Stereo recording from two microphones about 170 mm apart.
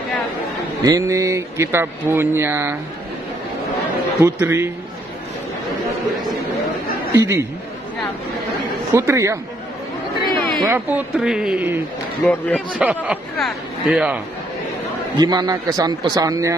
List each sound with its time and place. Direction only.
0.8 s speech: 20° right (ahead or behind)
4.2 s speech: 15° right (ahead or behind)
7.1 s speech: 15° right (ahead or behind)
8.9 s speech: 15° right (ahead or behind)
10.2 s a sound: 25° right (ahead or behind)
10.7 s speech: 10° right (ahead or behind)
12.3 s speech: 10° left (ahead or behind)
12.7 s speech: 10° right (ahead or behind)
15.1 s speech: 25° right (ahead or behind)